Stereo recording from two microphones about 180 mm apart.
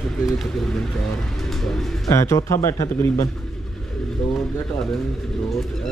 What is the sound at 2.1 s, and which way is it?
A man's voice, 15° left (ahead or behind).